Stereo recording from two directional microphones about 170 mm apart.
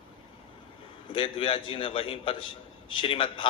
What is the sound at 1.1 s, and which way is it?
A man's voice, 30° left (ahead or behind).